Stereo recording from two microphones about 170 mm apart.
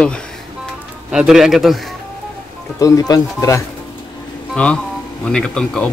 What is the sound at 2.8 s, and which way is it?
Speech, 20° left (ahead or behind).